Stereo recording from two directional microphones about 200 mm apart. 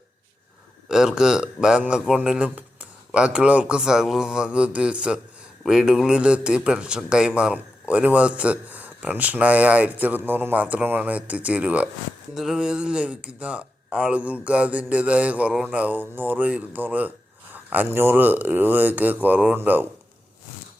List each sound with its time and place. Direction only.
0.9 s a man's voice: 5° right (ahead or behind)